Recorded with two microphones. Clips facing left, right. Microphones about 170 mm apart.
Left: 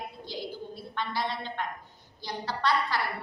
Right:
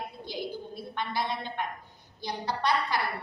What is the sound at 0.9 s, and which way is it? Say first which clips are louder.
A woman's voice: even; 15° right (ahead or behind).